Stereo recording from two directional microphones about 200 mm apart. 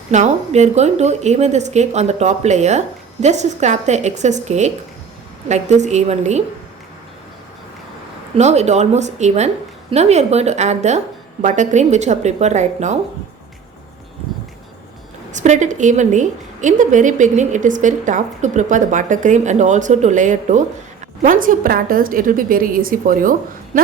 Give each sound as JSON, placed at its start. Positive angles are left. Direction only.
{"t": 0.1, "sound": "a woman's voice", "side_deg": -35}
{"t": 8.4, "sound": "a woman's voice", "side_deg": -35}
{"t": 15.3, "sound": "a woman's voice", "side_deg": -35}